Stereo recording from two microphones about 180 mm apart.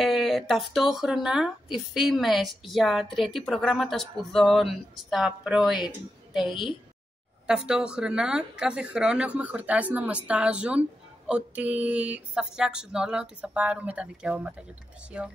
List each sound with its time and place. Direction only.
0.0 s speech: centre (ahead or behind)
6.4 s a woman's voice: 30° left (ahead or behind)
7.4 s speech: 5° right (ahead or behind)